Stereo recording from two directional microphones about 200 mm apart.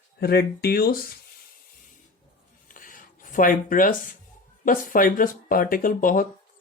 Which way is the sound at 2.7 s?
45° left (ahead or behind).